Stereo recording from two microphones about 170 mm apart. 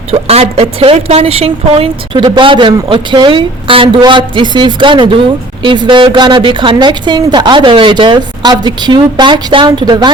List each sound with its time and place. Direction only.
0.1 s a woman's voice: 35° right (ahead or behind)